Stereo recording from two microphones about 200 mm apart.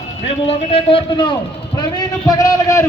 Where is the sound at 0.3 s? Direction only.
30° left (ahead or behind).